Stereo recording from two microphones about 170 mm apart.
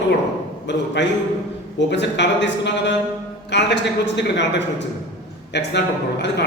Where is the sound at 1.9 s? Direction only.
90° left.